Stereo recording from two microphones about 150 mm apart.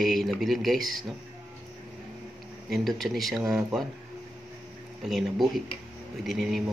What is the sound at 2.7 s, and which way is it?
Speech, centre (ahead or behind).